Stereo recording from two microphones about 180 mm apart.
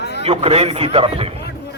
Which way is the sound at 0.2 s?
35° right (ahead or behind).